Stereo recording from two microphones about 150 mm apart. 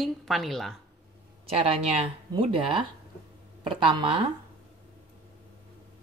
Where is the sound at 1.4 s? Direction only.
40° right (ahead or behind).